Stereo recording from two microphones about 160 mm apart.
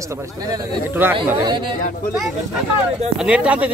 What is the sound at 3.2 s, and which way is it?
Speech, 5° right (ahead or behind).